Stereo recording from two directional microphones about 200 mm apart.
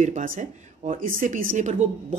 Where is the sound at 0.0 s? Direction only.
40° right (ahead or behind).